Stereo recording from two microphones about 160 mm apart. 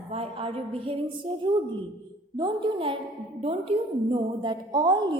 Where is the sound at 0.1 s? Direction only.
35° right (ahead or behind).